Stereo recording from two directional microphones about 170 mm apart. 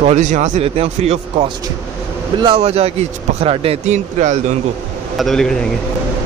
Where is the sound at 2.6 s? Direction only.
40° right (ahead or behind).